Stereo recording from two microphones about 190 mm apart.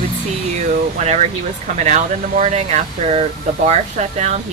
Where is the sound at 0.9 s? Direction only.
35° right (ahead or behind).